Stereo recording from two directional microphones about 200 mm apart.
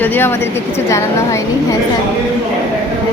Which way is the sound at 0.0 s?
10° left (ahead or behind).